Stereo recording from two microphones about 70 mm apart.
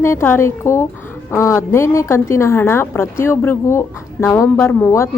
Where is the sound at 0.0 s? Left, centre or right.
Left.